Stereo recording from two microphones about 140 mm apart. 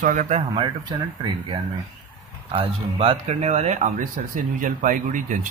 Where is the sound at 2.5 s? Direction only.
40° right (ahead or behind).